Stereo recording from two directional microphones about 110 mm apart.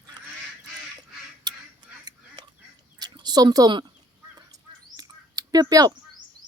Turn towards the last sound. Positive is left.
turn(degrees=-35)  # may be behind; listen again after turning